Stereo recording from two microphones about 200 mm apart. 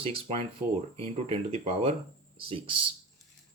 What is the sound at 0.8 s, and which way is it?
Speech, 30° right (ahead or behind).